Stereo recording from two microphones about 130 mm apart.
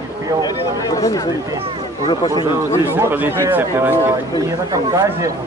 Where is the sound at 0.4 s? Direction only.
30° left (ahead or behind).